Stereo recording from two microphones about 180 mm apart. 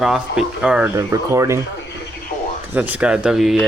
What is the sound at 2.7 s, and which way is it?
Speech, 10° right (ahead or behind).